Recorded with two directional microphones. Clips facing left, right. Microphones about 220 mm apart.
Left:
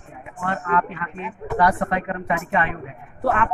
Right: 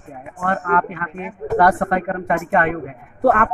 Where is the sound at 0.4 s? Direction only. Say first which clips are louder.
Right 3 dB; 50° right (ahead or behind).